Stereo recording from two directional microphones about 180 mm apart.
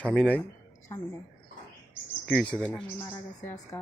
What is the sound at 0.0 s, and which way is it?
Speech, 5° left (ahead or behind).